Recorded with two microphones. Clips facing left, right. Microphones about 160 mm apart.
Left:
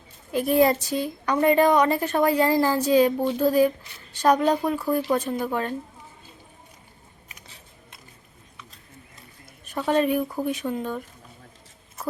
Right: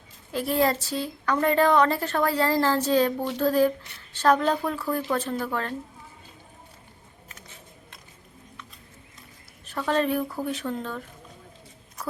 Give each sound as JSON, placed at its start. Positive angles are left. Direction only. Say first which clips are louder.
{"t": 0.3, "sound": "a woman's voice", "louder": "left 4 dB", "side_deg": 15}
{"t": 9.6, "sound": "a woman's voice", "louder": "left 3 dB", "side_deg": 15}